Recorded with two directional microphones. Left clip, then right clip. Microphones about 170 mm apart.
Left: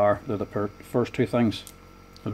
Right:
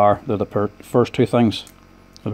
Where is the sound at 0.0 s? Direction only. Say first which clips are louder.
Right 7 dB; 35° right (ahead or behind).